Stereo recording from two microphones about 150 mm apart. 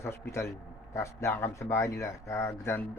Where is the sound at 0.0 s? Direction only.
15° left (ahead or behind).